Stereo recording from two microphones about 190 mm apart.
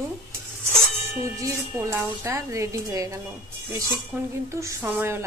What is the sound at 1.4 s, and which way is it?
A woman's voice, 15° right (ahead or behind).